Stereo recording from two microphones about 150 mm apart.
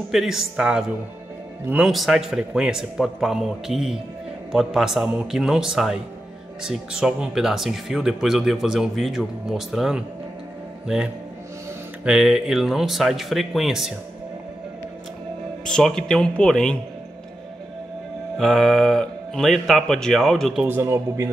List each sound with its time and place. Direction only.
0.1 s speech: centre (ahead or behind)
12.0 s speech: 5° right (ahead or behind)
15.6 s speech: 5° left (ahead or behind)
18.4 s speech: centre (ahead or behind)
20.6 s speech: 15° right (ahead or behind)